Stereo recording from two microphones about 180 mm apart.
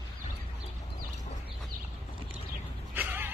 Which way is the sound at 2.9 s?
10° right (ahead or behind).